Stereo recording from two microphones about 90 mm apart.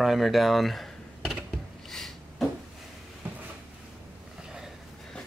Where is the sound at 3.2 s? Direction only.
25° right (ahead or behind).